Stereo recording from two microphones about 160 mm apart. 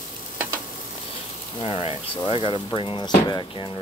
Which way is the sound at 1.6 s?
35° left (ahead or behind).